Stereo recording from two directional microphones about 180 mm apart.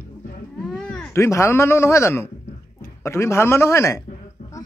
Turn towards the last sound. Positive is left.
turn(degrees=15)  # may be behind; listen again after turning